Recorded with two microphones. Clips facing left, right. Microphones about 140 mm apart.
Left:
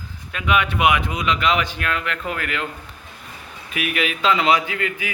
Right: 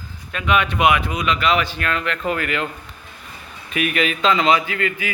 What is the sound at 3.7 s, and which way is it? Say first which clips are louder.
Speech: right 3 dB; 10° left (ahead or behind).